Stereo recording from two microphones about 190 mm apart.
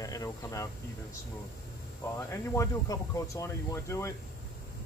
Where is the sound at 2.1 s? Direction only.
15° left (ahead or behind).